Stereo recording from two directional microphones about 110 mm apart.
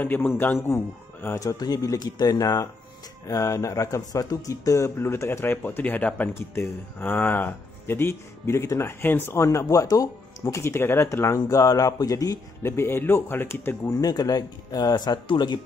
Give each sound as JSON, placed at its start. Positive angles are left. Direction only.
{"t": 0.0, "sound": "speech", "side_deg": 15}
{"t": 1.4, "sound": "speech", "side_deg": 35}
{"t": 13.8, "sound": "speech", "side_deg": 35}